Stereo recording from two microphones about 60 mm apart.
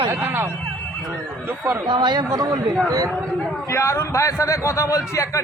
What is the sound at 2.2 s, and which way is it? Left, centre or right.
Speech, right.